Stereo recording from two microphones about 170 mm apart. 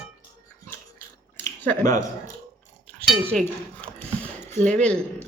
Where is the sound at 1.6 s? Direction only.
10° left (ahead or behind).